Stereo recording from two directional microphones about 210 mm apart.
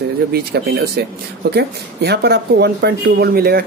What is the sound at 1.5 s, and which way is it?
Speech, 50° right (ahead or behind).